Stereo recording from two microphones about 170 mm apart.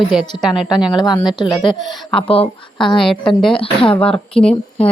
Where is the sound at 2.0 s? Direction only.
10° left (ahead or behind).